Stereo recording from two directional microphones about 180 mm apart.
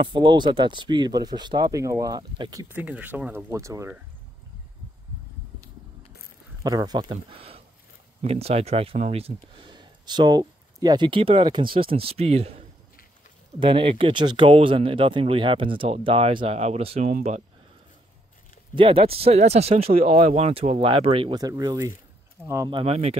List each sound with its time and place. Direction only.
0.0 s speech: 25° right (ahead or behind)
2.7 s speech: 10° right (ahead or behind)
6.6 s speech: 20° right (ahead or behind); by 17.4 s 35° right (ahead or behind)
18.8 s speech: 30° right (ahead or behind)